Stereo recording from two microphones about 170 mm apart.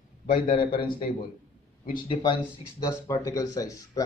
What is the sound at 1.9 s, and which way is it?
Speech, 30° left (ahead or behind).